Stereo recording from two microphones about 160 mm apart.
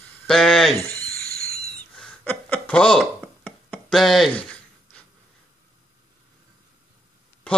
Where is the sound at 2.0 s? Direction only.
10° left (ahead or behind).